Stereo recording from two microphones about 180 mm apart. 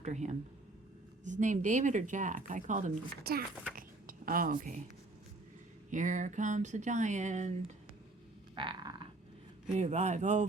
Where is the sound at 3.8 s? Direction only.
50° right (ahead or behind).